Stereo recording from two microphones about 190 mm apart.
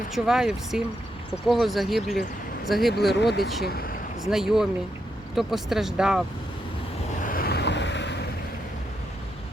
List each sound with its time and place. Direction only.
0.1 s speech: centre (ahead or behind)
3.1 s speech: 60° left (ahead or behind)
4.3 s speech: centre (ahead or behind)
7.2 s vehicle: 45° left (ahead or behind); by 8.2 s 65° left (ahead or behind)